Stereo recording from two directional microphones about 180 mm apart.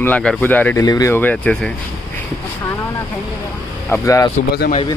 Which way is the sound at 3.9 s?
15° left (ahead or behind).